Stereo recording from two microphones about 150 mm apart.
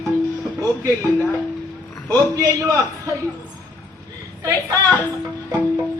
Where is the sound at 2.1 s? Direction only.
20° right (ahead or behind).